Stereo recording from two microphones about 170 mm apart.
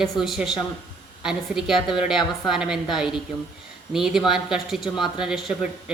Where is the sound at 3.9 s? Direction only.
5° right (ahead or behind).